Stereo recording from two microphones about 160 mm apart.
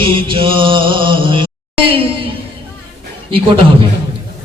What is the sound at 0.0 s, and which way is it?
Mantra, 30° right (ahead or behind).